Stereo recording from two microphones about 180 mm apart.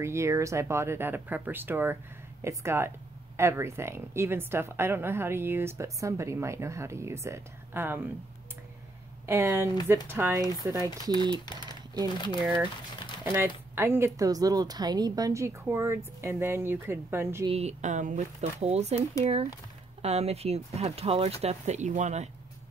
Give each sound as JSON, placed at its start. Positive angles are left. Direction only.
{"t": 0.0, "sound": "a woman's voice", "side_deg": -15}
{"t": 9.2, "sound": "a woman's voice", "side_deg": -15}
{"t": 13.2, "sound": "a woman's voice", "side_deg": -15}
{"t": 17.5, "sound": "speech", "side_deg": -35}